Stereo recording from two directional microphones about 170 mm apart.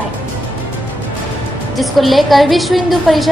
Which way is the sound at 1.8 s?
Centre (ahead or behind).